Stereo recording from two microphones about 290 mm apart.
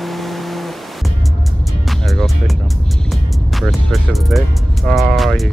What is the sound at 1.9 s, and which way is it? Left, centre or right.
Music, centre.